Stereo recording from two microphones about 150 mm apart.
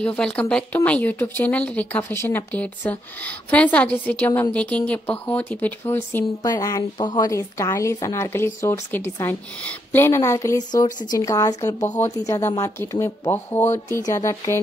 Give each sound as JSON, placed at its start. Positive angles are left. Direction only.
{"t": 0.0, "sound": "a woman's voice", "side_deg": 10}